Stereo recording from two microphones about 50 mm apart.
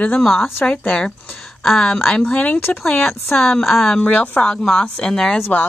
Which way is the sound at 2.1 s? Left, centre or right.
Left.